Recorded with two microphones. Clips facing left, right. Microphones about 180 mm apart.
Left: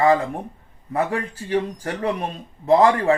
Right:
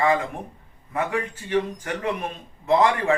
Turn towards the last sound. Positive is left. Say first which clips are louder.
# left 4 dB
turn(degrees=35)  # may be behind; listen again after turning